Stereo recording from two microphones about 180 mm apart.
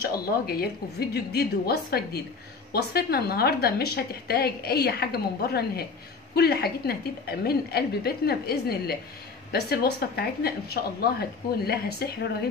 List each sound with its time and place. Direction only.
0.5 s a woman's voice: 60° left (ahead or behind)